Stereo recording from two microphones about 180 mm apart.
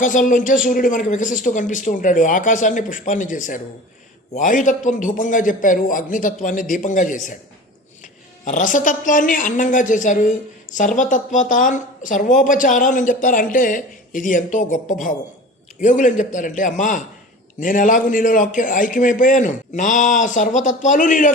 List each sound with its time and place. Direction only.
0.0 s speech: 45° left (ahead or behind)